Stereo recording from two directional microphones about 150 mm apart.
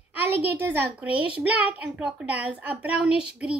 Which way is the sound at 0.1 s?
10° right (ahead or behind).